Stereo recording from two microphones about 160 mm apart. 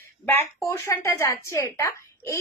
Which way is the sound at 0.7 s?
20° left (ahead or behind).